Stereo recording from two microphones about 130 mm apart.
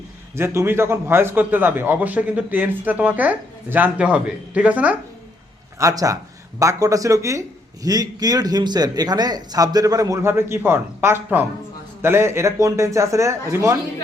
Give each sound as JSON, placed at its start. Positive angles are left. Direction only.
{"t": 0.3, "sound": "a man's voice", "side_deg": -20}
{"t": 5.8, "sound": "a man's voice", "side_deg": -25}